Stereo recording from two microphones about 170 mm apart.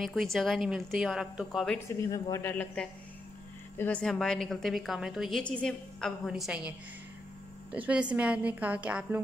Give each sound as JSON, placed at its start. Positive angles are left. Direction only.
{"t": 0.0, "sound": "a woman's voice", "side_deg": 0}
{"t": 2.0, "sound": "a woman's voice", "side_deg": 20}
{"t": 7.7, "sound": "a woman's voice", "side_deg": -5}